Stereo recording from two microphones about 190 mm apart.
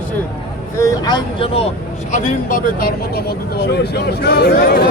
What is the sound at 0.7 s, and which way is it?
Speech, 15° left (ahead or behind).